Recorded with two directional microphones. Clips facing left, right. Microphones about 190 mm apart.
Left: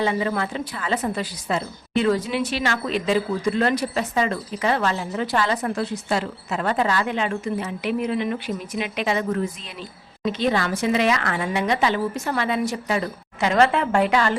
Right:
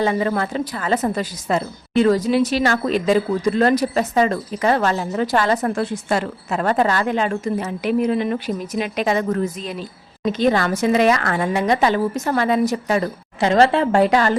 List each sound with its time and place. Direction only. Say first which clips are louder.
0.0 s a woman's voice: right 3 dB; 45° right (ahead or behind)